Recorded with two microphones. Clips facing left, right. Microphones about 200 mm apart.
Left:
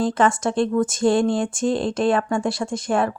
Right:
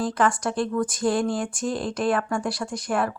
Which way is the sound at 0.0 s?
25° left (ahead or behind).